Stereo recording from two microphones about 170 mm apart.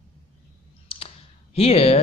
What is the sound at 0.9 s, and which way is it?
Clicking, 35° left (ahead or behind).